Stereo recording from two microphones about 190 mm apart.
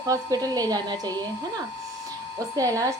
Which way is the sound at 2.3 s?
20° right (ahead or behind).